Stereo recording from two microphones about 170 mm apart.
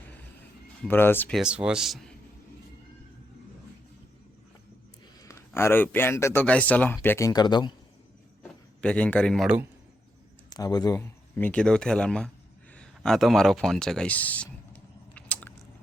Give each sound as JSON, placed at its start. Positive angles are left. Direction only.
{"t": 0.9, "sound": "speech", "side_deg": 15}
{"t": 1.4, "sound": "a man's voice", "side_deg": -5}
{"t": 5.2, "sound": "speech", "side_deg": 15}
{"t": 8.8, "sound": "a man's voice", "side_deg": 5}
{"t": 10.5, "sound": "speech", "side_deg": 25}
{"t": 12.7, "sound": "a sound", "side_deg": 5}